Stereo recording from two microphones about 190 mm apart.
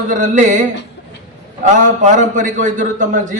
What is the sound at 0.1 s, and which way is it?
Speech, 40° right (ahead or behind).